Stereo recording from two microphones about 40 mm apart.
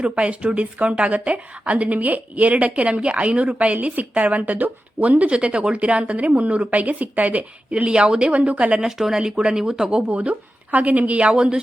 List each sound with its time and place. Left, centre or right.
0.0 s speech: right
7.7 s speech: right
8.9 s speech: centre
10.1 s speech: right